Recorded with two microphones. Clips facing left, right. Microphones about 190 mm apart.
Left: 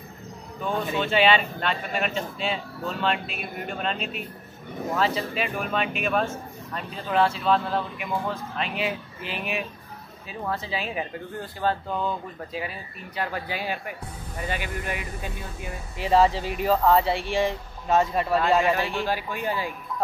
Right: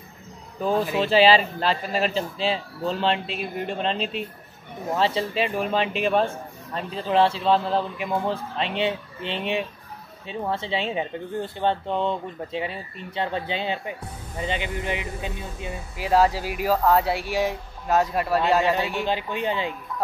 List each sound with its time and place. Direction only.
0.7 s speech: 5° right (ahead or behind)
1.0 s speech: 30° right (ahead or behind)
16.0 s speech: 5° right (ahead or behind)
18.6 s speech: 20° right (ahead or behind)